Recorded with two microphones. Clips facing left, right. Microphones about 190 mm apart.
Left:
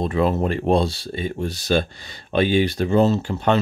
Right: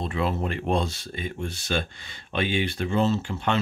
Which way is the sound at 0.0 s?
40° left (ahead or behind).